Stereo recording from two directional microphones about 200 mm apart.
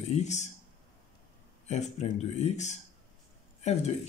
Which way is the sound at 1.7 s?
35° left (ahead or behind).